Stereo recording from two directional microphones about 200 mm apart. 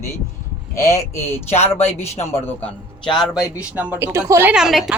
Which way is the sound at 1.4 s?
30° left (ahead or behind).